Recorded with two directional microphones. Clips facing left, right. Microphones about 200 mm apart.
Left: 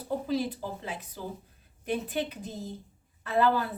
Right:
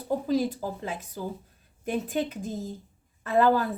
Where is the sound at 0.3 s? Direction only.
45° right (ahead or behind).